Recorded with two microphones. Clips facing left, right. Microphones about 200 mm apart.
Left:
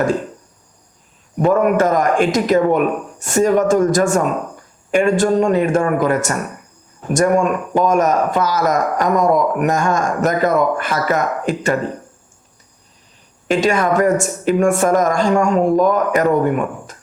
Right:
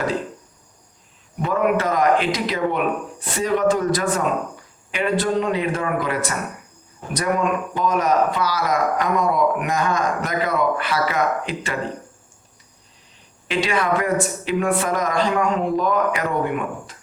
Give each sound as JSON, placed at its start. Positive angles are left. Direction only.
{"t": 1.4, "sound": "speech", "side_deg": 45}
{"t": 13.5, "sound": "speech", "side_deg": 45}